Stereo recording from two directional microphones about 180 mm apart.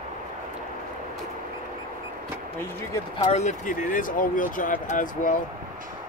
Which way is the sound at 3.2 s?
40° left (ahead or behind).